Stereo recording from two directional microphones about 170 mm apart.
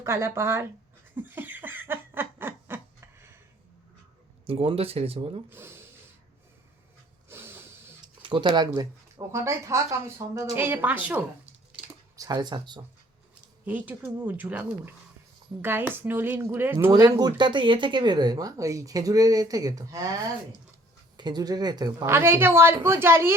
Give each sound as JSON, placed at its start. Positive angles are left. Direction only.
{"t": 0.0, "sound": "speech", "side_deg": -15}
{"t": 1.1, "sound": "a sound", "side_deg": -10}
{"t": 4.4, "sound": "speech", "side_deg": -35}
{"t": 5.5, "sound": "speech", "side_deg": -15}
{"t": 7.3, "sound": "a sound", "side_deg": -15}
{"t": 8.2, "sound": "speech", "side_deg": -30}
{"t": 12.1, "sound": "speech", "side_deg": -20}
{"t": 13.7, "sound": "speech", "side_deg": -10}
{"t": 16.7, "sound": "speech", "side_deg": -20}
{"t": 21.2, "sound": "speech", "side_deg": -25}